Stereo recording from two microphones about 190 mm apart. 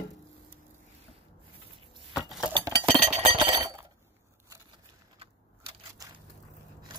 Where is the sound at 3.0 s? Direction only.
35° right (ahead or behind).